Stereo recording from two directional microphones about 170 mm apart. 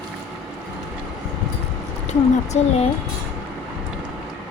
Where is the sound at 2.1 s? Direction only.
40° left (ahead or behind).